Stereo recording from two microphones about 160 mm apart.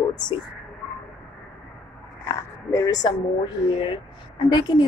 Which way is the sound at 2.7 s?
20° left (ahead or behind).